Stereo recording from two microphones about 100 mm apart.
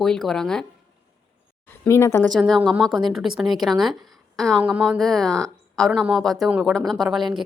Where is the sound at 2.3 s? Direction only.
5° left (ahead or behind).